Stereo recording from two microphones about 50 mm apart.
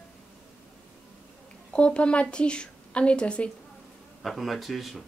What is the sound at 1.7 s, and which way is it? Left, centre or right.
A woman's voice, left.